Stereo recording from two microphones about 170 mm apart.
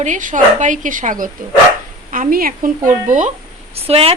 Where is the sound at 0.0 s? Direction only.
50° right (ahead or behind).